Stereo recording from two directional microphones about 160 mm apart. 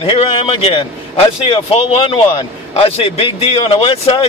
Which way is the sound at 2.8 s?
40° left (ahead or behind).